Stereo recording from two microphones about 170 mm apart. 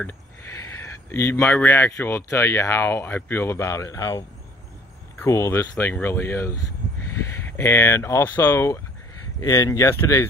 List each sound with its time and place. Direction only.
1.1 s speech: 15° left (ahead or behind)
5.2 s speech: 15° left (ahead or behind)